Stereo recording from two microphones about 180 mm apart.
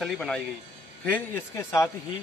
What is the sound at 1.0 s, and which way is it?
Speech, 15° left (ahead or behind).